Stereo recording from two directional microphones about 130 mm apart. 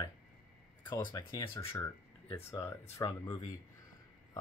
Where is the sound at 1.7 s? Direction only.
20° left (ahead or behind).